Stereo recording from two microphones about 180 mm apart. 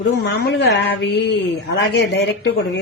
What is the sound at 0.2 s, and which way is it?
Speech, 65° left (ahead or behind).